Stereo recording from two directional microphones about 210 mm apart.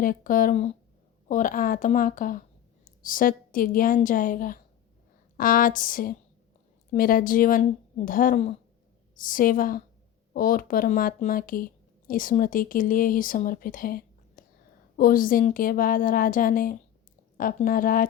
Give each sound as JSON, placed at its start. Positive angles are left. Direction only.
{"t": 0.0, "sound": "speech", "side_deg": 40}